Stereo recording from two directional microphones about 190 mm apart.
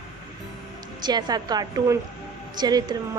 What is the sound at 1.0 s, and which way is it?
A woman's voice, 20° right (ahead or behind).